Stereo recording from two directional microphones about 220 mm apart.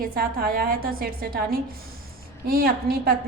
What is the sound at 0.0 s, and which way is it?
A woman's voice, 45° right (ahead or behind).